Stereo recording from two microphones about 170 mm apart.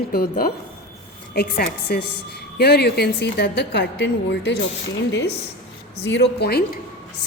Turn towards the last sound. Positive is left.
turn(degrees=75)  # may be behind; listen again after turning